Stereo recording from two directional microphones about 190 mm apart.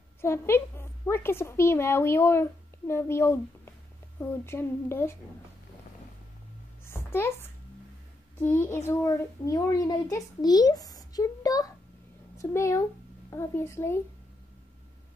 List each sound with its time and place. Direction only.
0.2 s a woman's voice: 15° left (ahead or behind)
6.8 s a sound: 10° left (ahead or behind)
8.4 s a child's voice: 10° left (ahead or behind)